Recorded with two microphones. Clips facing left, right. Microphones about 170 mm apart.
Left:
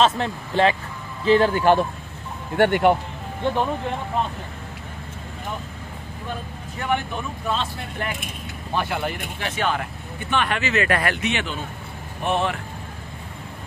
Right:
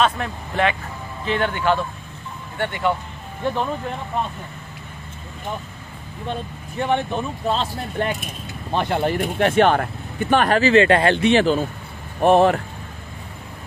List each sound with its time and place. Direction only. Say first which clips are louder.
0.0 s speech: left 1 dB; 30° left (ahead or behind)
2.5 s speech: left 6 dB; 65° left (ahead or behind)
6.8 s speech: right 4 dB; 30° right (ahead or behind)
9.4 s speech: right 11 dB; 55° right (ahead or behind)
10.3 s speech: right 8 dB; 40° right (ahead or behind)